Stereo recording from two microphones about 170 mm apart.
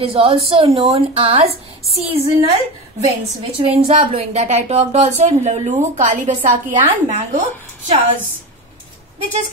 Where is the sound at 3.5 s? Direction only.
35° right (ahead or behind).